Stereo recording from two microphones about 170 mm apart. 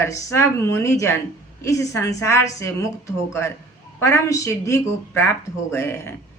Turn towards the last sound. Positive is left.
turn(degrees=15)  # may be behind; listen again after turning